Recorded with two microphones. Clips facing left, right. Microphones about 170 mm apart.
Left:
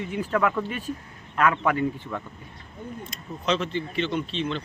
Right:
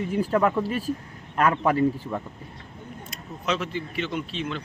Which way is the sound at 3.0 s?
5° right (ahead or behind).